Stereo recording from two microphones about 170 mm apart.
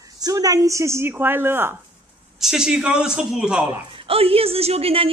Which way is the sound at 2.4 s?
5° right (ahead or behind).